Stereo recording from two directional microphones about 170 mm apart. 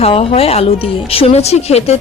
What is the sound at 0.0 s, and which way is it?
Speech, 35° left (ahead or behind).